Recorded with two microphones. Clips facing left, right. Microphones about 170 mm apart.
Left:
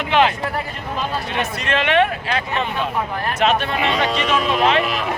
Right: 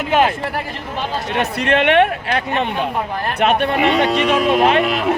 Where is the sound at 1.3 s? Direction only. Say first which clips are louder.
Right 5 dB; 65° right (ahead or behind).